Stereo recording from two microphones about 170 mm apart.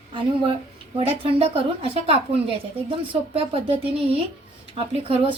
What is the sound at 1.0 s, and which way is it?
A woman's voice, 35° right (ahead or behind).